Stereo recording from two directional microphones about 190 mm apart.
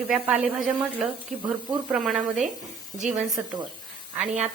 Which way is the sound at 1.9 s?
Centre (ahead or behind).